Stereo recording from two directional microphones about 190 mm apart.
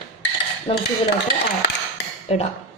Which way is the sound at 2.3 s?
30° left (ahead or behind).